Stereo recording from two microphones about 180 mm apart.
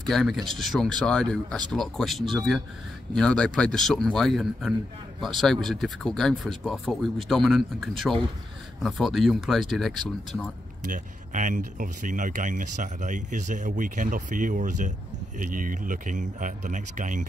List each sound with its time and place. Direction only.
0.1 s speech: centre (ahead or behind)
10.9 s speech: 45° right (ahead or behind)